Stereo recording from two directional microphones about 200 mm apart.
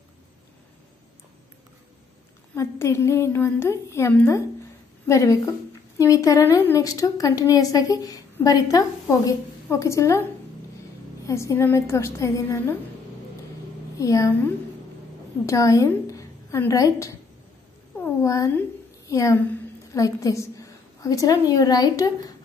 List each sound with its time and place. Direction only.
2.5 s a woman's voice: 15° left (ahead or behind)
11.2 s a woman's voice: 15° left (ahead or behind)
13.9 s a woman's voice: 15° left (ahead or behind)